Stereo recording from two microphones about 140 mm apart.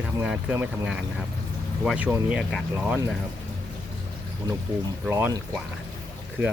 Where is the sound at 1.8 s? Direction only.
5° right (ahead or behind).